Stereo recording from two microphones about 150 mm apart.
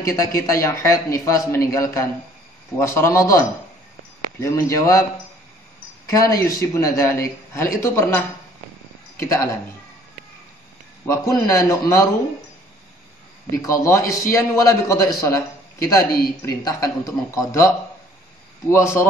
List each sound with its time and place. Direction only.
0.0 s a man's voice: 20° left (ahead or behind)
6.0 s a man's voice: 25° left (ahead or behind)
9.2 s a man's voice: 20° left (ahead or behind)
11.1 s a man's voice: 20° left (ahead or behind)
13.6 s a man's voice: 20° left (ahead or behind)
18.7 s a man's voice: 20° left (ahead or behind)